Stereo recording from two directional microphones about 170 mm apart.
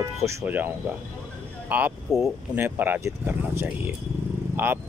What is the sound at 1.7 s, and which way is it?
Speech, 5° right (ahead or behind).